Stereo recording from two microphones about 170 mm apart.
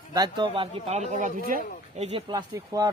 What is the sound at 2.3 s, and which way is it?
Speech, 20° right (ahead or behind).